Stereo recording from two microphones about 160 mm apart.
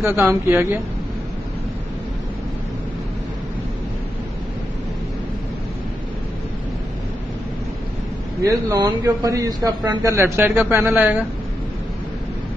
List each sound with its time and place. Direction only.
0.0 s speech: 15° right (ahead or behind)
8.4 s a man's voice: 20° right (ahead or behind)